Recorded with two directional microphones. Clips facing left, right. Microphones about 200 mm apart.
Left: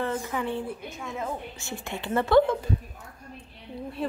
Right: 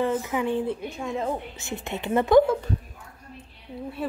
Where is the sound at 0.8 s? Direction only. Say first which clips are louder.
Right 5 dB; 30° right (ahead or behind).